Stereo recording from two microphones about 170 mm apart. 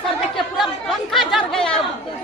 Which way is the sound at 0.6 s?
Centre (ahead or behind).